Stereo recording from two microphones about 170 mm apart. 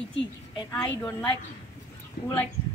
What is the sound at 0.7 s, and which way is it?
Speech, 20° left (ahead or behind).